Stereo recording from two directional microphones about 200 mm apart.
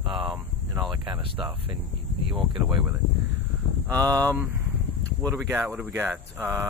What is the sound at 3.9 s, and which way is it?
Speech, 20° right (ahead or behind).